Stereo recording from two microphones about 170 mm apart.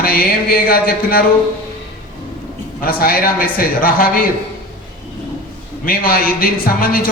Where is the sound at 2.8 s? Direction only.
60° left (ahead or behind).